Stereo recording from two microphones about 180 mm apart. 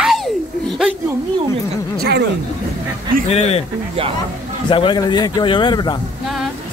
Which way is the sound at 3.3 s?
35° left (ahead or behind).